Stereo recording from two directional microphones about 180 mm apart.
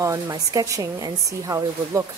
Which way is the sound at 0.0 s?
20° right (ahead or behind).